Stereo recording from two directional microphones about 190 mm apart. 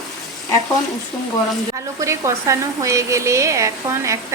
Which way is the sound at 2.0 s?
15° right (ahead or behind).